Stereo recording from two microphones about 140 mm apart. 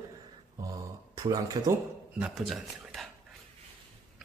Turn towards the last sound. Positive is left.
turn(degrees=0)  # may be behind; listen again after turning